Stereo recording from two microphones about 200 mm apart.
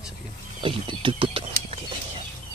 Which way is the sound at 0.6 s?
25° right (ahead or behind).